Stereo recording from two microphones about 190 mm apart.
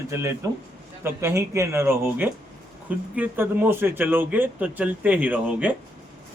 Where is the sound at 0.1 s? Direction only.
15° right (ahead or behind).